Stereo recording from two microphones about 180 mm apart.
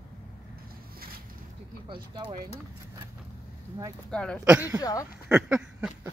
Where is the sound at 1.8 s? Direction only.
25° right (ahead or behind).